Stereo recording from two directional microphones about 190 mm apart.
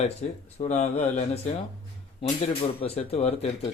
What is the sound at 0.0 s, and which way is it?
Speech, 35° left (ahead or behind).